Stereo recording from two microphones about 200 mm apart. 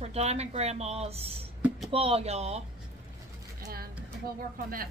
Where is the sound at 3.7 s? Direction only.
50° right (ahead or behind).